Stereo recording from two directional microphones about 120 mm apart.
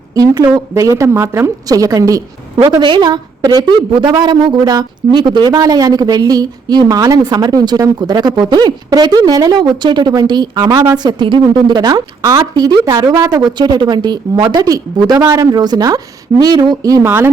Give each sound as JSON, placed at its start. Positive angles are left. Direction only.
{"t": 0.7, "sound": "a woman's voice", "side_deg": -25}
{"t": 17.0, "sound": "a woman's voice", "side_deg": -20}